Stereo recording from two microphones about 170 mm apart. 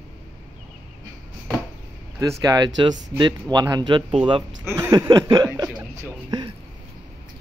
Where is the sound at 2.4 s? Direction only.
20° right (ahead or behind).